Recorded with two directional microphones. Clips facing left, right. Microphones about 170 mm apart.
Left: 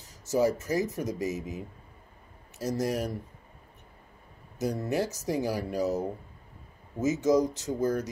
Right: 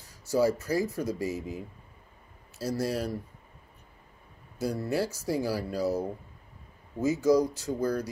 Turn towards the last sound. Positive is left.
turn(degrees=20)  # may be behind; listen again after turning